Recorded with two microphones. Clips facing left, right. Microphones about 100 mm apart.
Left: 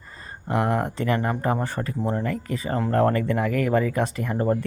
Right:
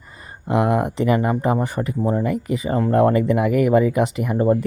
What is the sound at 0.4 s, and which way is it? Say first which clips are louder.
Speech: right 5 dB; 15° right (ahead or behind).